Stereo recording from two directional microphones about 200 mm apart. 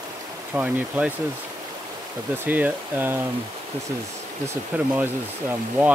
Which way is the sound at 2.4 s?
10° right (ahead or behind).